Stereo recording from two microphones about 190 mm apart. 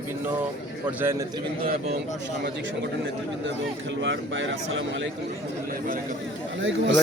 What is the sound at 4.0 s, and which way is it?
Speech, 75° right (ahead or behind).